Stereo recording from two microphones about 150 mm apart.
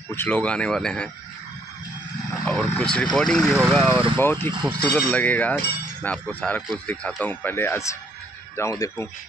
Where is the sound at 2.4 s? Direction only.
10° left (ahead or behind).